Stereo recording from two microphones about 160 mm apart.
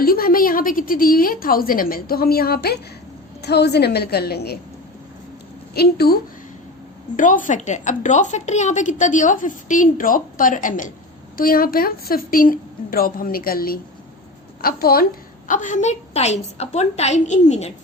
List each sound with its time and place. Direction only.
0.0 s a woman's voice: 65° left (ahead or behind)
3.4 s a woman's voice: 90° left
5.7 s a woman's voice: 80° left
7.2 s a woman's voice: 55° left (ahead or behind)
15.4 s a woman's voice: 55° left (ahead or behind)